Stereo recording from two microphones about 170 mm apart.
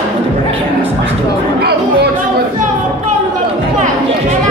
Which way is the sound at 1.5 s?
70° right (ahead or behind).